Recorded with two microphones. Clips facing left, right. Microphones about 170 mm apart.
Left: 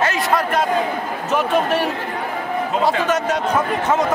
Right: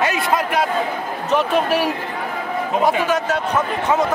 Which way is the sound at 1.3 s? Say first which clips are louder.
Right 1 dB; 5° right (ahead or behind).